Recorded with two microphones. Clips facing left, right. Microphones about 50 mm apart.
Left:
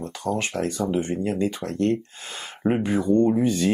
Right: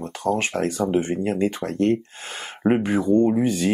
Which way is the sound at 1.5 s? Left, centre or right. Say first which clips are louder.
Right 2 dB; right.